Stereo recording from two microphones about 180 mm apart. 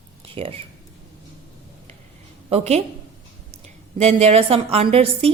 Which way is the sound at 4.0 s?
35° right (ahead or behind).